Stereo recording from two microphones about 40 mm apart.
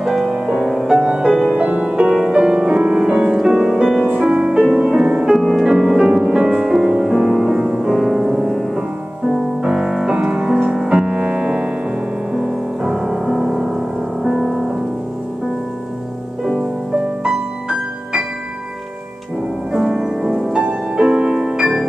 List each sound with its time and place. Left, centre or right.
0.0 s music: centre
0.3 s music: right
1.6 s music: right
2.0 s music: right
5.0 s music: right
5.5 s music: centre
9.7 s music: centre
17.2 s music: right
19.7 s music: centre